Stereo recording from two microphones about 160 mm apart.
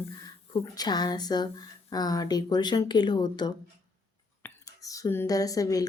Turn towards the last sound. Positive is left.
turn(degrees=20)  # may be behind; listen again after turning